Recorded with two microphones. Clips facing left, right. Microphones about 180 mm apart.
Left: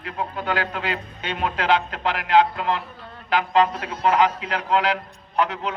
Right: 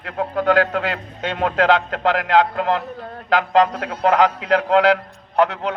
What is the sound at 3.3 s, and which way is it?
A man's voice, 60° right (ahead or behind).